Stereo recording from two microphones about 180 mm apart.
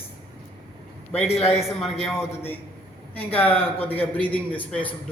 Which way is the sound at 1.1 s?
35° left (ahead or behind).